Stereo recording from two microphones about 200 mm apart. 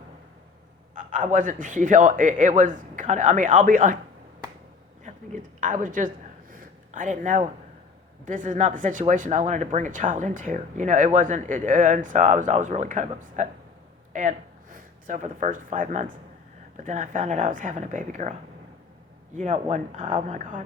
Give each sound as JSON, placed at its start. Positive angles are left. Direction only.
{"t": 0.9, "sound": "speech", "side_deg": -40}
{"t": 5.0, "sound": "speech", "side_deg": -40}
{"t": 6.5, "sound": "a sound", "side_deg": -45}
{"t": 8.2, "sound": "speech", "side_deg": -40}
{"t": 19.4, "sound": "speech", "side_deg": -35}